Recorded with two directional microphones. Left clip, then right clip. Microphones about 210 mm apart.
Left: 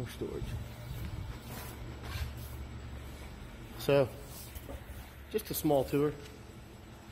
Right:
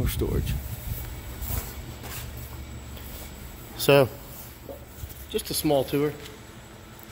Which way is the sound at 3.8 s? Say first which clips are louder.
Right 9 dB; 50° right (ahead or behind).